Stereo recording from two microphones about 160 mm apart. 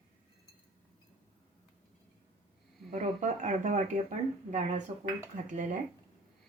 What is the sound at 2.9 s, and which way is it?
Speech, 45° right (ahead or behind).